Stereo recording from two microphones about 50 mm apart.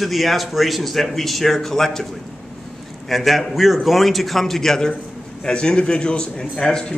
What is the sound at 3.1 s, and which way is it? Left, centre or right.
Speech, centre.